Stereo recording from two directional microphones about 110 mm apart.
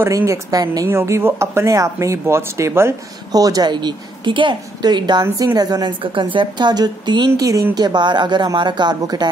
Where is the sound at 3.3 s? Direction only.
35° right (ahead or behind).